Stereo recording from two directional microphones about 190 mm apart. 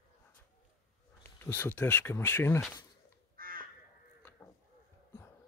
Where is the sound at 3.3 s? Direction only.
50° right (ahead or behind).